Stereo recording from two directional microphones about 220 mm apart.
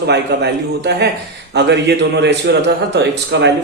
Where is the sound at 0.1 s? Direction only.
50° right (ahead or behind).